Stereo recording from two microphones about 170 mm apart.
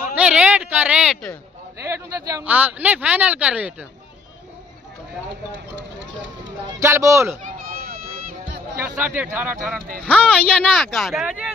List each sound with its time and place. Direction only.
0.0 s a sound: 5° right (ahead or behind)
1.8 s speech: 15° right (ahead or behind)
6.8 s speech: 15° right (ahead or behind)
7.4 s run: 55° right (ahead or behind)
8.7 s speech: 10° right (ahead or behind)
10.0 s speech: 5° left (ahead or behind)